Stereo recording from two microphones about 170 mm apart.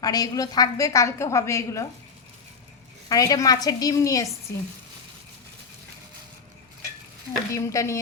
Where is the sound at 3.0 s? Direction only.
20° left (ahead or behind).